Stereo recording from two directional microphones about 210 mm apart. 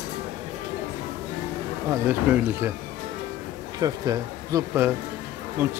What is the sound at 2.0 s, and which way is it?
Speech, 10° right (ahead or behind).